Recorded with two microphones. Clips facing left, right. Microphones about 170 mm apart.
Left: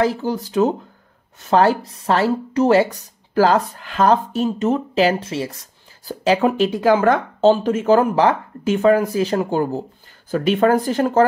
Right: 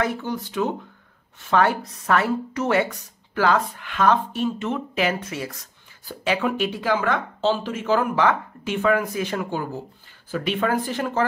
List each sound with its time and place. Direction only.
0.0 s speech: 35° left (ahead or behind)